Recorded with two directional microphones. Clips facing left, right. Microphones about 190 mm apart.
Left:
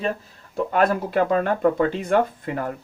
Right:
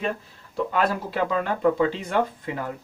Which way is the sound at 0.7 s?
50° left (ahead or behind).